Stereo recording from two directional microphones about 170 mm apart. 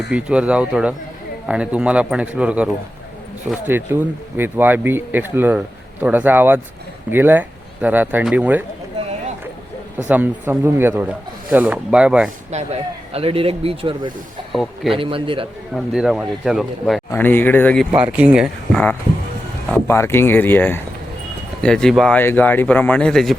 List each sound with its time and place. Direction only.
0.1 s speech: 5° right (ahead or behind)
10.1 s speech: 10° right (ahead or behind)
12.5 s speech: 40° right (ahead or behind)
14.5 s speech: centre (ahead or behind)
14.9 s speech: 30° right (ahead or behind)
15.7 s speech: centre (ahead or behind)
17.1 s speech: 10° left (ahead or behind)
17.9 s speech: 10° right (ahead or behind)
19.7 s speech: 15° left (ahead or behind)